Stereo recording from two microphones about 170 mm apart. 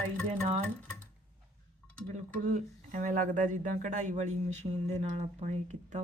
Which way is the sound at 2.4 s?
50° right (ahead or behind).